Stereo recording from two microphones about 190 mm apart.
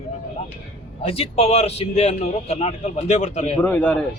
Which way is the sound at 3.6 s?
10° left (ahead or behind).